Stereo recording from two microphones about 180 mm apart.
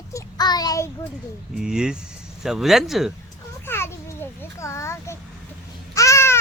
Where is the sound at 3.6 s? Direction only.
15° left (ahead or behind).